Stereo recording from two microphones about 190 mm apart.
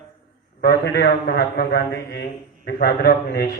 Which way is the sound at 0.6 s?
60° left (ahead or behind).